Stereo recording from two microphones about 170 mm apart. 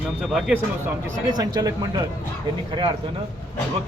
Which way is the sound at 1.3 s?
20° right (ahead or behind).